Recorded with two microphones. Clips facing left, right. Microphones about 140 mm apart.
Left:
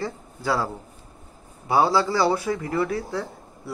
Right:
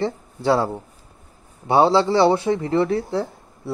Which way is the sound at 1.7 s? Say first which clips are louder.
Right 4 dB; 25° right (ahead or behind).